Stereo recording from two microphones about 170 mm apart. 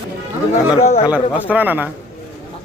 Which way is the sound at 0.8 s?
35° left (ahead or behind).